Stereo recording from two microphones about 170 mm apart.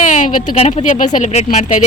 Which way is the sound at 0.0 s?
50° left (ahead or behind).